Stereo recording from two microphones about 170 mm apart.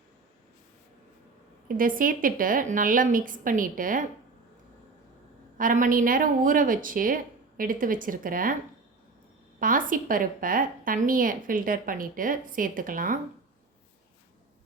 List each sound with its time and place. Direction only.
1.6 s a woman's voice: 55° right (ahead or behind)
5.5 s a woman's voice: 50° right (ahead or behind)
9.6 s a woman's voice: 55° right (ahead or behind)